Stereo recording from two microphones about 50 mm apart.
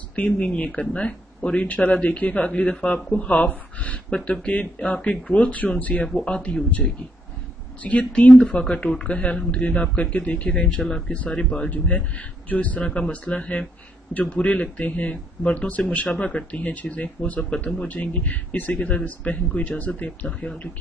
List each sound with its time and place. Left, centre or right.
0.1 s speech: left
10.8 s speech: centre
11.1 s speech: left
11.7 s speech: left
20.2 s speech: centre